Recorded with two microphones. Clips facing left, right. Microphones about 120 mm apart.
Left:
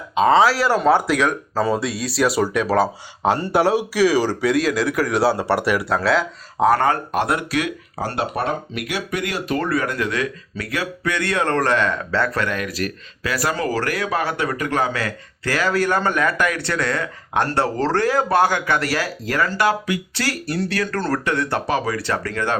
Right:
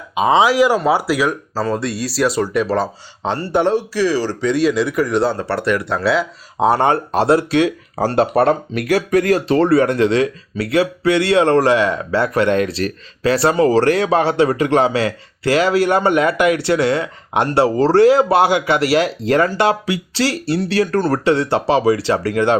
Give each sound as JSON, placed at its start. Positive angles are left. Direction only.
{"t": 0.1, "sound": "speech", "side_deg": -10}
{"t": 6.6, "sound": "speech", "side_deg": -30}
{"t": 7.9, "sound": "speech", "side_deg": -40}